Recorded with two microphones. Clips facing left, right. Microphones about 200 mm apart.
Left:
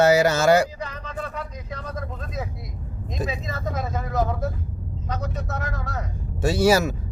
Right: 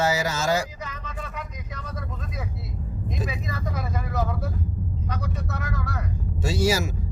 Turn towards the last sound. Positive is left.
turn(degrees=60)  # may be behind; listen again after turning